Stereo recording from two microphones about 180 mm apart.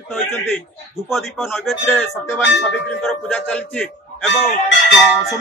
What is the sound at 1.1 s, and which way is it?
A man's voice, centre (ahead or behind).